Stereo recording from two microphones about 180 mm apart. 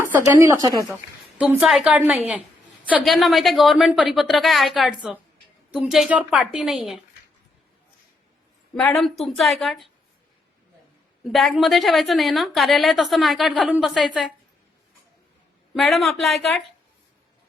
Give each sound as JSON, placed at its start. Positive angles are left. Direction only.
{"t": 0.3, "sound": "a woman's voice", "side_deg": -20}
{"t": 1.4, "sound": "a woman's voice", "side_deg": -5}
{"t": 8.7, "sound": "a woman's voice", "side_deg": 5}
{"t": 11.2, "sound": "a woman's voice", "side_deg": 0}
{"t": 15.7, "sound": "a woman's voice", "side_deg": 0}